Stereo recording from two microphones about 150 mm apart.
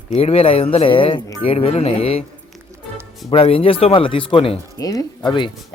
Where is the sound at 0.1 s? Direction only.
40° left (ahead or behind).